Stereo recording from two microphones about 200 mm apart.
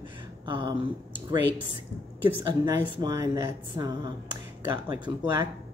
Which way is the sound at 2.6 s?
20° right (ahead or behind).